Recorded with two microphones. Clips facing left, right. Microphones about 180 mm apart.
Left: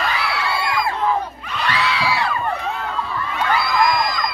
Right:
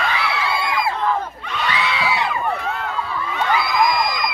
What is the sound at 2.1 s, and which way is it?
Crowd, 20° right (ahead or behind).